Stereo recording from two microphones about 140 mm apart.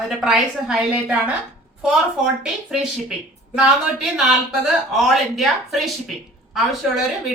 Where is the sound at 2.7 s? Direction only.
5° right (ahead or behind).